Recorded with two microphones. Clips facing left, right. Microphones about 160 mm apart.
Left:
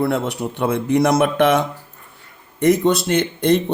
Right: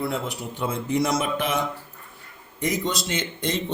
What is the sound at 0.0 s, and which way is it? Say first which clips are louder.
A man's voice: left 8 dB; 70° left (ahead or behind).